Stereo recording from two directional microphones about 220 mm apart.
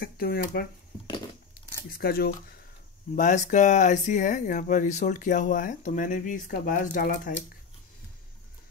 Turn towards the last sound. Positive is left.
turn(degrees=35)  # may be behind; listen again after turning